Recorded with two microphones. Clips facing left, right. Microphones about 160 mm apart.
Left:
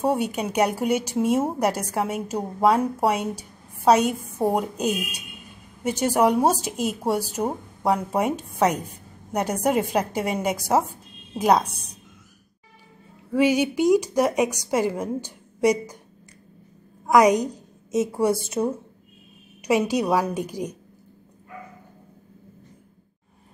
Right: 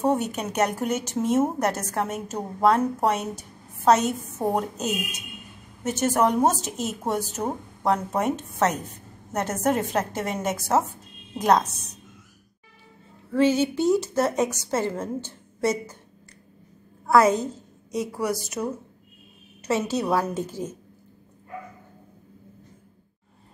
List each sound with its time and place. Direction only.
0.0 s a woman's voice: 10° left (ahead or behind)
13.3 s a woman's voice: 10° left (ahead or behind)
17.0 s a woman's voice: 15° left (ahead or behind)
19.6 s a woman's voice: 15° left (ahead or behind)